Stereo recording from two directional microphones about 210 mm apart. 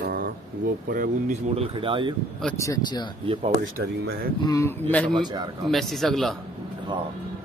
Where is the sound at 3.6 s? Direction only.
45° right (ahead or behind).